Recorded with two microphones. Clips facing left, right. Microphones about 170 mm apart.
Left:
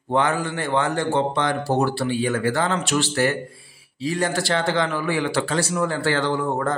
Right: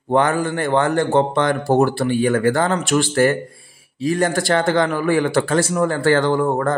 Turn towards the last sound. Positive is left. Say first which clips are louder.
# right 5 dB
turn(degrees=-50)  # may be behind; listen again after turning